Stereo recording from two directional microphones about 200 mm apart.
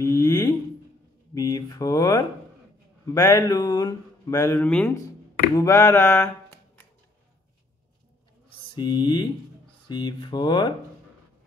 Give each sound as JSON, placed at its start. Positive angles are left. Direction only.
{"t": 0.0, "sound": "a sound", "side_deg": 15}
{"t": 1.3, "sound": "speech", "side_deg": 15}
{"t": 8.7, "sound": "speech", "side_deg": 20}